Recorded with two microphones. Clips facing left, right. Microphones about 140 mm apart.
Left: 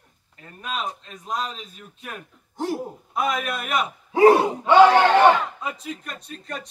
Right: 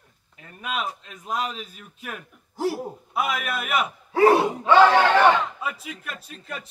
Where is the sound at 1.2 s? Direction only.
5° right (ahead or behind).